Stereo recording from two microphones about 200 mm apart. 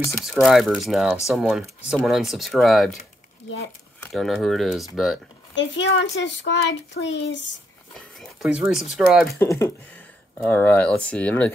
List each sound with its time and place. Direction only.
0.1 s speech: centre (ahead or behind)
4.0 s speech: centre (ahead or behind)
5.5 s a child's voice: 65° left (ahead or behind)
8.2 s speech: 5° right (ahead or behind)
9.4 s speech: 15° left (ahead or behind)